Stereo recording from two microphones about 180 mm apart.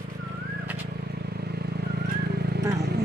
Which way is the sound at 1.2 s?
60° right (ahead or behind).